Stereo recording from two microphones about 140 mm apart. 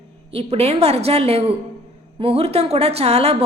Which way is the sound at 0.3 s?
45° right (ahead or behind).